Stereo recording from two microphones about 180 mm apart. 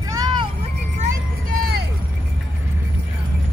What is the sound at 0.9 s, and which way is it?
Vehicle, 50° right (ahead or behind).